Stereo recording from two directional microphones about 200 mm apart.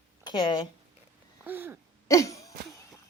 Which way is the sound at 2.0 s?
15° left (ahead or behind).